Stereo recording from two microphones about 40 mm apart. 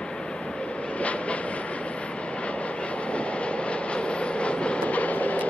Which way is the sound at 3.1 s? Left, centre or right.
Left.